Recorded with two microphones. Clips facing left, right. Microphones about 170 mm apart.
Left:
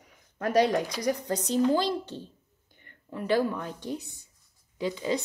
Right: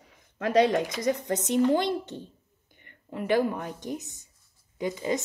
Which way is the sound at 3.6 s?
15° right (ahead or behind).